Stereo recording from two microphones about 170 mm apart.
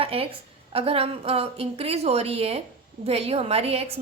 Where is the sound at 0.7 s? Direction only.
35° right (ahead or behind).